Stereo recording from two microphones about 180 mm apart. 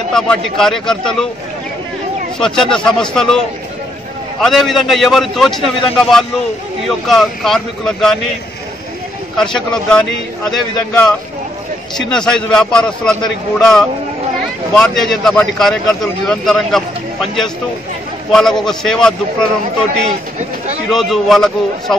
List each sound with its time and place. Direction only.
0.1 s a man's voice: 5° left (ahead or behind)
2.3 s a man's voice: 5° left (ahead or behind)
4.4 s a man's voice: centre (ahead or behind)
9.4 s a man's voice: 5° left (ahead or behind)
20.1 s speech: 40° right (ahead or behind)
20.9 s a man's voice: centre (ahead or behind)